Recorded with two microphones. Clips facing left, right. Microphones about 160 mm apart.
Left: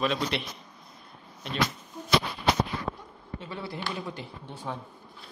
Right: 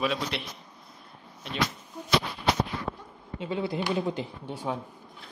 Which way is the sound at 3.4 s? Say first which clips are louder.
Right 7 dB; 15° right (ahead or behind).